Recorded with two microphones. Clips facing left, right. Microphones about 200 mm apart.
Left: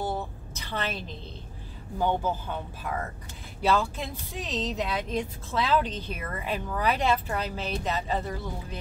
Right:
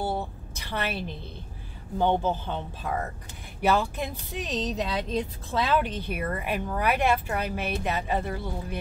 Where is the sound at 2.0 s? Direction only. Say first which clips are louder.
Right 3 dB; 25° right (ahead or behind).